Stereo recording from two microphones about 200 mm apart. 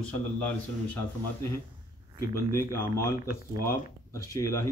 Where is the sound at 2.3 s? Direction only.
15° left (ahead or behind).